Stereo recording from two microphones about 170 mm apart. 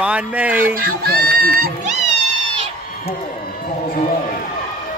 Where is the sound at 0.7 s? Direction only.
60° right (ahead or behind).